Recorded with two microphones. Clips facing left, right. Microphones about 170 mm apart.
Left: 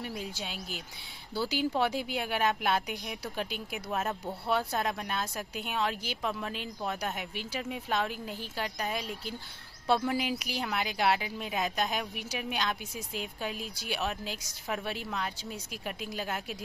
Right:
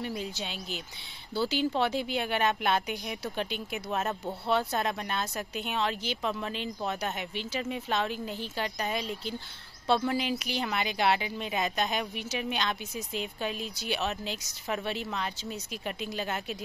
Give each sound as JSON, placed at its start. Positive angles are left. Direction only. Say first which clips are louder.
{"t": 0.0, "sound": "a woman's voice", "louder": "right 3 dB", "side_deg": 5}